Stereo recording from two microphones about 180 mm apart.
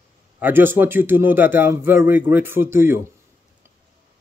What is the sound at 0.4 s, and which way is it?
A man's voice, 10° right (ahead or behind).